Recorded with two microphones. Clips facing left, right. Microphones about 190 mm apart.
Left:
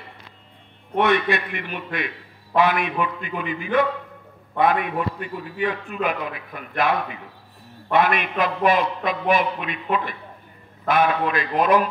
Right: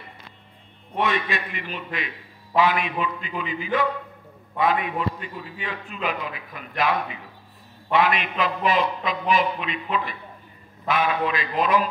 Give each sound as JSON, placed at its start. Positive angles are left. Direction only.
{"t": 0.9, "sound": "a man's voice", "side_deg": 60}
{"t": 7.9, "sound": "a man's voice", "side_deg": 50}